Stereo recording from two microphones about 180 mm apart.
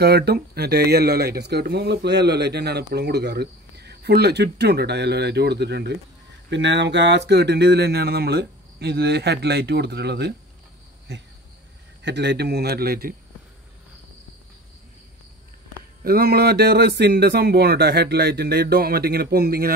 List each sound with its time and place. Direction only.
0.0 s speech: 65° right (ahead or behind)
6.5 s speech: 80° right
12.0 s speech: 75° right (ahead or behind); by 13.1 s 60° right (ahead or behind)
16.0 s speech: 60° right (ahead or behind)